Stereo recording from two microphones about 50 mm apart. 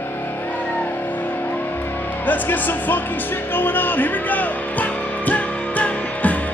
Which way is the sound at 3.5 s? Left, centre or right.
Left.